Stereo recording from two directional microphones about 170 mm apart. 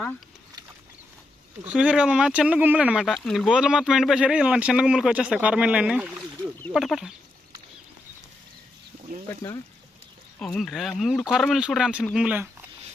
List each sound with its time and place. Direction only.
1.6 s speech: 5° right (ahead or behind)
9.3 s speech: 15° left (ahead or behind)
10.4 s speech: centre (ahead or behind)